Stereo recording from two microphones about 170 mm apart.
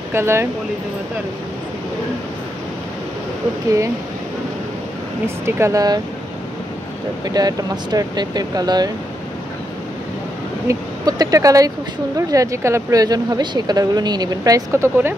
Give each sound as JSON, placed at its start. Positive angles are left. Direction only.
{"t": 0.1, "sound": "speech", "side_deg": -15}
{"t": 5.2, "sound": "speech", "side_deg": -15}
{"t": 7.2, "sound": "speech", "side_deg": -25}
{"t": 10.7, "sound": "speech", "side_deg": -20}